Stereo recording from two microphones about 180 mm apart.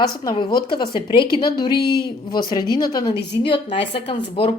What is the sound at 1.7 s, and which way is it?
Speech, 60° left (ahead or behind).